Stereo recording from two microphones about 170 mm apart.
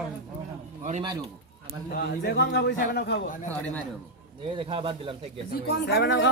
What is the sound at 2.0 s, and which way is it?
Speech, 75° left (ahead or behind).